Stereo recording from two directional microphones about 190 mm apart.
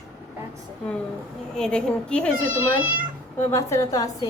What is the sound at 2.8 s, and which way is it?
Speech, 10° right (ahead or behind).